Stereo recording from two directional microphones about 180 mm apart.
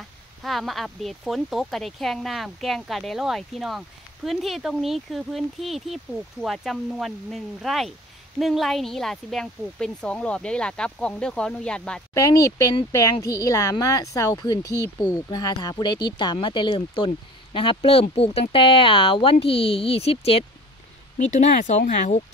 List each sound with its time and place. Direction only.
0.4 s speech: centre (ahead or behind)
12.2 s speech: 20° left (ahead or behind); by 22.2 s 40° left (ahead or behind)